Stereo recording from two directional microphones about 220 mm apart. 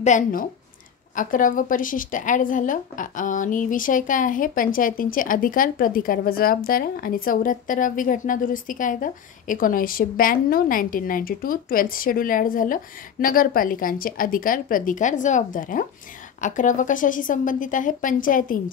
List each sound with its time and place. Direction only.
0.0 s speech: 35° left (ahead or behind)